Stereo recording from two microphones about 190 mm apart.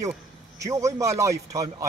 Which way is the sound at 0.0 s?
15° right (ahead or behind).